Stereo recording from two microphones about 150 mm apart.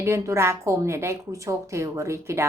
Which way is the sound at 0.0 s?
15° right (ahead or behind).